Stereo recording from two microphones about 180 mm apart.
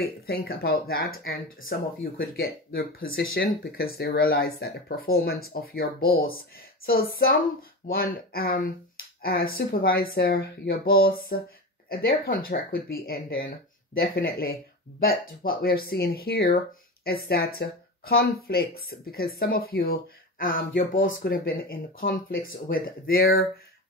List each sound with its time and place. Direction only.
0.0 s speech: 60° left (ahead or behind)